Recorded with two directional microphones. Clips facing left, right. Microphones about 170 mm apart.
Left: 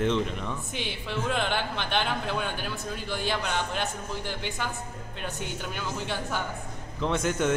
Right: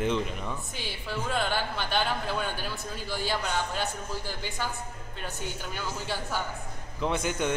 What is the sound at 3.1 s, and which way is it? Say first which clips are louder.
Speech: even; 5° right (ahead or behind).